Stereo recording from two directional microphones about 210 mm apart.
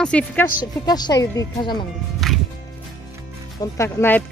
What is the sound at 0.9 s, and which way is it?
Speech, 20° left (ahead or behind).